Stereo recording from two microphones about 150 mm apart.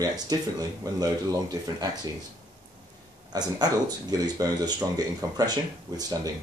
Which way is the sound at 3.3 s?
25° right (ahead or behind).